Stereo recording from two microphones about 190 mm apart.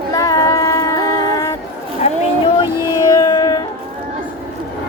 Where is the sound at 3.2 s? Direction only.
20° left (ahead or behind).